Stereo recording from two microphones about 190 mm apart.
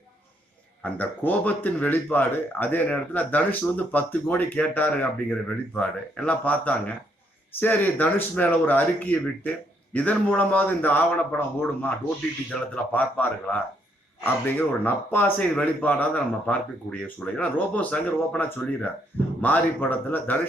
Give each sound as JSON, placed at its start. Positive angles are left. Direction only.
{"t": 0.8, "sound": "speech", "side_deg": 10}